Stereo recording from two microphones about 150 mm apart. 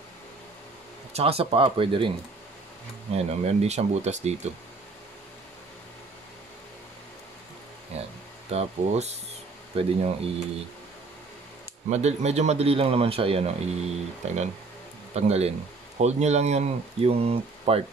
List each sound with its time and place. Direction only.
1.1 s speech: 40° right (ahead or behind)
7.9 s a sound: 45° right (ahead or behind)
8.5 s speech: 45° right (ahead or behind)
11.9 s speech: 45° right (ahead or behind)